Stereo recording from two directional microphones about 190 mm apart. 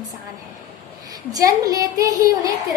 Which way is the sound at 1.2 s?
20° right (ahead or behind).